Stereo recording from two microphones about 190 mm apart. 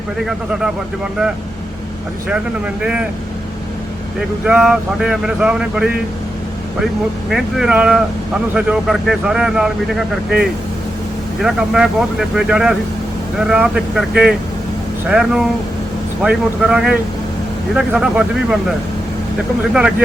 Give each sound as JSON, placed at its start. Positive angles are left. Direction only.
{"t": 2.8, "sound": "a man's voice", "side_deg": -5}
{"t": 4.4, "sound": "a man's voice", "side_deg": -5}
{"t": 7.3, "sound": "a man's voice", "side_deg": 0}